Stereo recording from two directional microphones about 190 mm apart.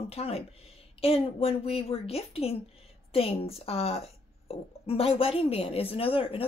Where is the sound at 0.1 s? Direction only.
30° left (ahead or behind).